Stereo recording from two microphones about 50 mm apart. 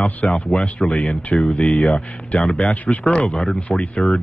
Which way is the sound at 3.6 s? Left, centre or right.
Left.